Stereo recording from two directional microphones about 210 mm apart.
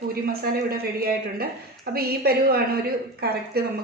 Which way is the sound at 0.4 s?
45° right (ahead or behind).